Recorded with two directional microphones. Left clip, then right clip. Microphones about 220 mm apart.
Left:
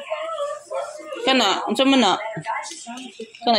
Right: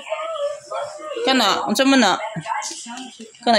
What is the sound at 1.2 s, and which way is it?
Speech, 30° right (ahead or behind).